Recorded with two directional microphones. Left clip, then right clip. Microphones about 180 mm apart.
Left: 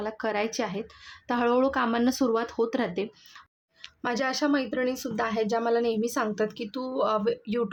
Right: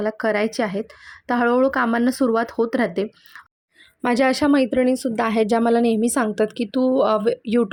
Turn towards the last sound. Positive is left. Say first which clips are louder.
# right 8 dB
turn(degrees=-35)  # may be behind; listen again after turning